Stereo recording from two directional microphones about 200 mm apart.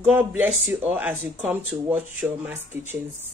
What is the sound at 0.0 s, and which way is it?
Speech, 10° right (ahead or behind).